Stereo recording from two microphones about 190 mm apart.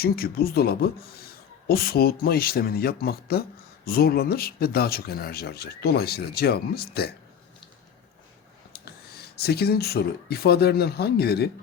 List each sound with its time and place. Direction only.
0.0 s speech: 55° left (ahead or behind)
8.7 s speech: 55° left (ahead or behind)